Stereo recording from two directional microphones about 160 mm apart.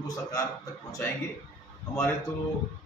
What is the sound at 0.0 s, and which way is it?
Speech, 20° left (ahead or behind).